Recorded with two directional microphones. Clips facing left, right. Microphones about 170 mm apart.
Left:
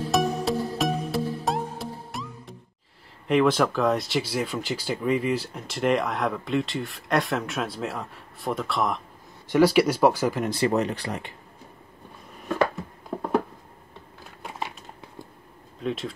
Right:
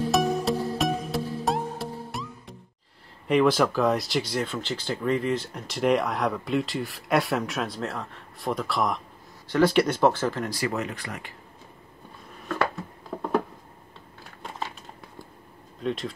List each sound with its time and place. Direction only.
0.1 s music: centre (ahead or behind)
3.3 s speech: centre (ahead or behind)
10.5 s speech: 30° left (ahead or behind)
13.1 s a sound: 10° left (ahead or behind)
15.8 s speech: centre (ahead or behind)